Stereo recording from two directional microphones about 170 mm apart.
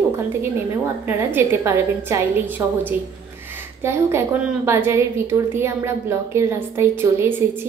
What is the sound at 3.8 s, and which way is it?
A woman's voice, 15° right (ahead or behind).